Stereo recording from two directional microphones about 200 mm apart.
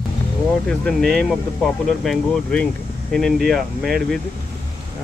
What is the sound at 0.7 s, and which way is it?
Speech, centre (ahead or behind).